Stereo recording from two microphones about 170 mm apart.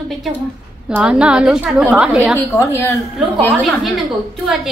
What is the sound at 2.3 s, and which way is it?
Speech, 15° left (ahead or behind).